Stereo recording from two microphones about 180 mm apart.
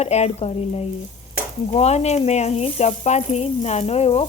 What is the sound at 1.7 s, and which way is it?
Speech, 35° left (ahead or behind).